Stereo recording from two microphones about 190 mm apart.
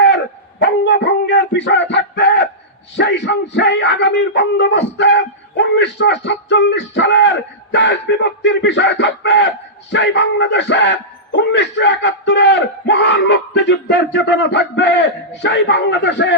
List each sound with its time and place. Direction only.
0.6 s dog: 65° left (ahead or behind)
2.9 s speech: 65° left (ahead or behind)